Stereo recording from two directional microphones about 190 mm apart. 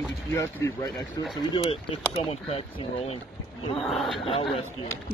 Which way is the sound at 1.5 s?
30° left (ahead or behind).